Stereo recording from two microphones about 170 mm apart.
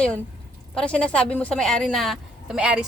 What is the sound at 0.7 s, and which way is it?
A woman's voice, 5° left (ahead or behind).